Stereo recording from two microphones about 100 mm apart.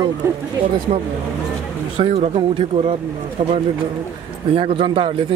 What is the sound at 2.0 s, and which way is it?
Speech, 80° right.